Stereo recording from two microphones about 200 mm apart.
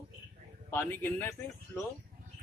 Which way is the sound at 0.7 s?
10° left (ahead or behind).